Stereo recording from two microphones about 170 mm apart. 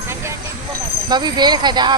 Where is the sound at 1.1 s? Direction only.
25° right (ahead or behind).